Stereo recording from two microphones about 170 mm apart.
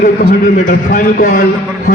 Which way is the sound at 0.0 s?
55° left (ahead or behind).